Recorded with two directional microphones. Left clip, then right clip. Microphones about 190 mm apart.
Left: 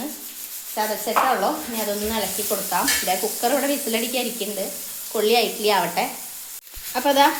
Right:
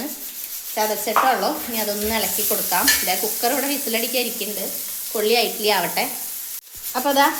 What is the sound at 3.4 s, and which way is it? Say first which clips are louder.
Sizzle: left 1 dB; 20° left (ahead or behind).